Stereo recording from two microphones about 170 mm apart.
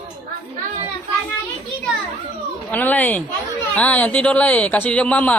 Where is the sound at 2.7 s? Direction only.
10° left (ahead or behind).